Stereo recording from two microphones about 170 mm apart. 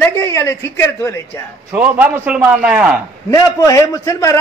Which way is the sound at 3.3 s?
20° left (ahead or behind).